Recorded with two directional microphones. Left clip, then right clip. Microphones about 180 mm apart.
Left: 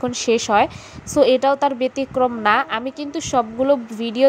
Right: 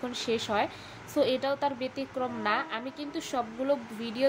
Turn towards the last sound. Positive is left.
turn(degrees=40)  # may be behind; listen again after turning